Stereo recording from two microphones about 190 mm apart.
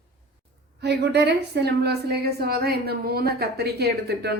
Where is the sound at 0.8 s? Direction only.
60° right (ahead or behind).